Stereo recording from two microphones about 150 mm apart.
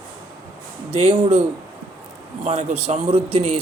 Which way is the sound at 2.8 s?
40° right (ahead or behind).